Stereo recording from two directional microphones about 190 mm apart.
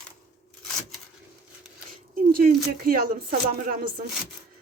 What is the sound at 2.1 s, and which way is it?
Speech, 50° right (ahead or behind).